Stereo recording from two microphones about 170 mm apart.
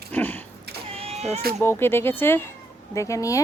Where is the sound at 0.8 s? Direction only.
35° right (ahead or behind).